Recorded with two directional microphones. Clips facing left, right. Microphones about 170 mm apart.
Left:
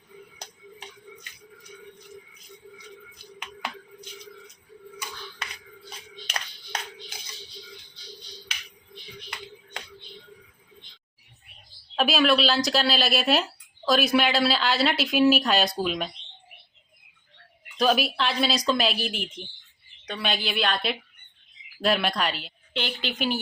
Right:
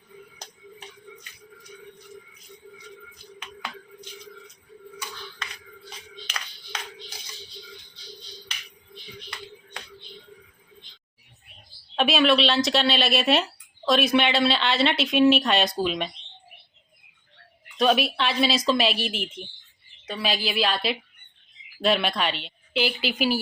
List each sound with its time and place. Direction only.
11.9 s speech: centre (ahead or behind)
17.7 s speech: centre (ahead or behind)